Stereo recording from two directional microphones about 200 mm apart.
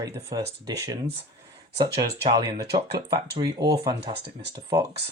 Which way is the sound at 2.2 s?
20° right (ahead or behind).